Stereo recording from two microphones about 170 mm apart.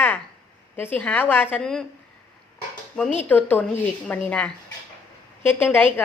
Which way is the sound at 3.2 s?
10° left (ahead or behind).